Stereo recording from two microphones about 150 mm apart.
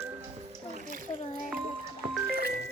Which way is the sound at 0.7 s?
60° right (ahead or behind).